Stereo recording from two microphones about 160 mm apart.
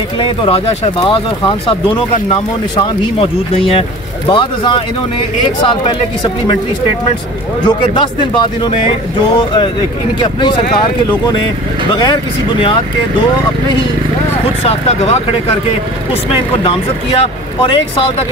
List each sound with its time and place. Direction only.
0.2 s speech: 35° left (ahead or behind)
7.6 s speech: 30° left (ahead or behind)
10.2 s speech: 30° left (ahead or behind)
11.9 s speech: 30° left (ahead or behind)
14.6 s speech: 40° left (ahead or behind)
16.6 s speech: 35° left (ahead or behind)